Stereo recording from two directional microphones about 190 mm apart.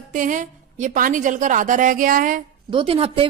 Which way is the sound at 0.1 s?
45° right (ahead or behind).